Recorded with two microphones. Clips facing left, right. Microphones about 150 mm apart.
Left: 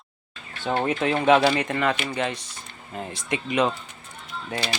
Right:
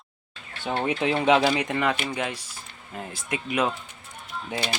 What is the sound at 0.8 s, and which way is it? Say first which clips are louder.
Speech: left 1 dB; 10° right (ahead or behind).